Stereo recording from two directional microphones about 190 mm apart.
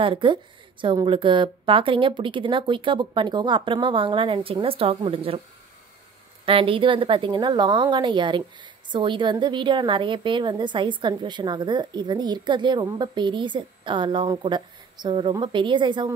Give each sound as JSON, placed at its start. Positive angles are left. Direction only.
{"t": 0.0, "sound": "a woman's voice", "side_deg": -25}
{"t": 6.4, "sound": "a woman's voice", "side_deg": -30}